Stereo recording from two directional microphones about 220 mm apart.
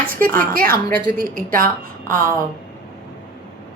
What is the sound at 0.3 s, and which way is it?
A woman's voice, 40° right (ahead or behind).